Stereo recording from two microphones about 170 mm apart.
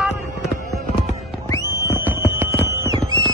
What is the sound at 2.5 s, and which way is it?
Horse, 15° right (ahead or behind).